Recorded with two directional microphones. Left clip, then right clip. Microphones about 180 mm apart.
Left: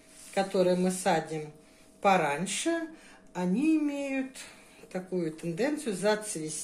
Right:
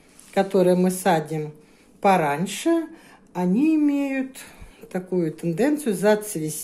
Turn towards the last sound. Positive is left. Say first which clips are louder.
# right 9 dB
turn(degrees=-45)  # may be behind; listen again after turning